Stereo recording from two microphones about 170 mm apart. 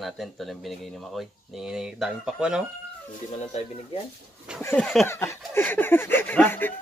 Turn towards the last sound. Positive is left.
turn(degrees=10)  # may be behind; listen again after turning